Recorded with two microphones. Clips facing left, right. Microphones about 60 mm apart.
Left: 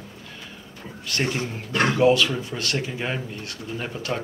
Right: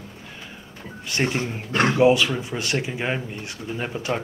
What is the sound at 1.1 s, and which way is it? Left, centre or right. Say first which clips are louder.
A man's voice: right 2 dB; right.